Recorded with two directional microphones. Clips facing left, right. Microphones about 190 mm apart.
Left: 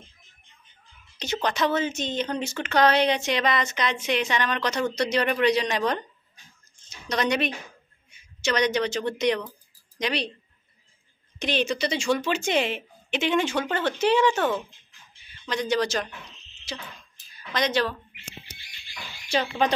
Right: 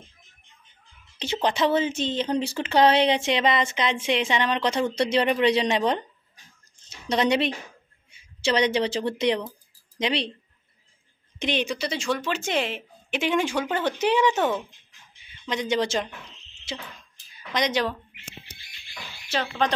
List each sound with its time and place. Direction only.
1.1 s speech: 30° right (ahead or behind)
7.1 s speech: 25° right (ahead or behind)
11.3 s speech: 20° right (ahead or behind)